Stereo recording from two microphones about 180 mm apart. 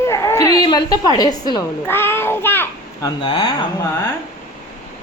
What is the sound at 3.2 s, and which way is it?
Speech, 30° left (ahead or behind).